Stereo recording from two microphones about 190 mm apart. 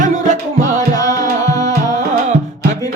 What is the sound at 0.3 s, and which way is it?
Music, 40° right (ahead or behind).